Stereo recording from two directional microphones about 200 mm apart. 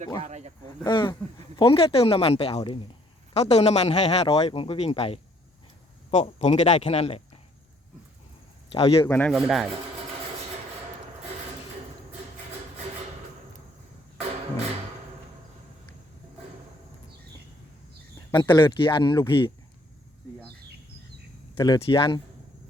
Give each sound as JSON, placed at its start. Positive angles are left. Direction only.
{"t": 0.2, "sound": "speech", "side_deg": -35}
{"t": 0.9, "sound": "speech", "side_deg": 25}
{"t": 8.7, "sound": "speech", "side_deg": 30}
{"t": 9.0, "sound": "speech", "side_deg": 10}
{"t": 18.3, "sound": "speech", "side_deg": 15}
{"t": 21.5, "sound": "speech", "side_deg": 25}